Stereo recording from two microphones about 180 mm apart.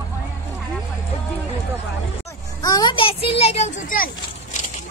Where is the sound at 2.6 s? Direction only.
20° left (ahead or behind); by 4.1 s 45° left (ahead or behind).